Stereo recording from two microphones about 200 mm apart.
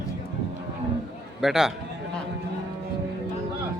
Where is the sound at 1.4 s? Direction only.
Centre (ahead or behind).